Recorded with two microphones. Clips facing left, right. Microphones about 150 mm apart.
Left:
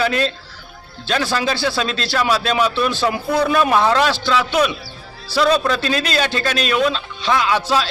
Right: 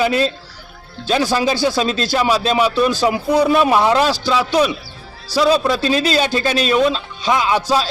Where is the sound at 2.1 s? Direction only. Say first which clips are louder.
Right 1 dB; 15° right (ahead or behind).